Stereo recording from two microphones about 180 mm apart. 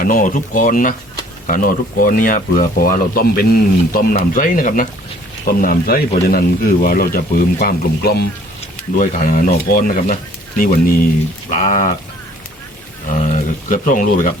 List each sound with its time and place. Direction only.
0.0 s speech: 50° left (ahead or behind)
13.1 s speech: 45° left (ahead or behind)